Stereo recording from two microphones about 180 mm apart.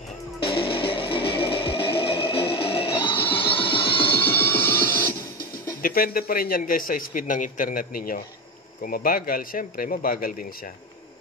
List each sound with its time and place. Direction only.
0.4 s music: 30° left (ahead or behind)
4.2 s music: 10° left (ahead or behind)
5.8 s a man's voice: 55° left (ahead or behind)